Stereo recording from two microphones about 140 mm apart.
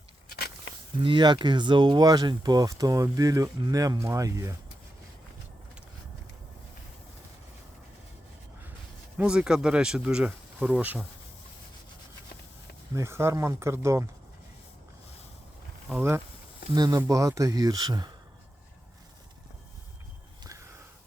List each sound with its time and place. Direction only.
1.0 s speech: 35° right (ahead or behind)
9.1 s speech: 5° right (ahead or behind)
12.9 s speech: 20° right (ahead or behind)
16.0 s speech: 20° right (ahead or behind)
16.7 s speech: 30° right (ahead or behind)